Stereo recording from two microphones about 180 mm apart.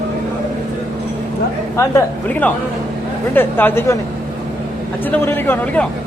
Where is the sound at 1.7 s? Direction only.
10° left (ahead or behind).